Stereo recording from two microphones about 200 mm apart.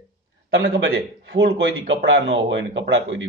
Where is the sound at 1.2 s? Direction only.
65° right (ahead or behind).